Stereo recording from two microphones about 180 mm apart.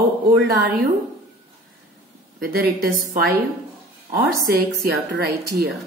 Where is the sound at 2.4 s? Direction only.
55° right (ahead or behind).